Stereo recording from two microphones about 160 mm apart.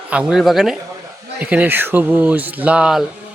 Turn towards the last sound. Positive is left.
turn(degrees=-5)  # may be behind; listen again after turning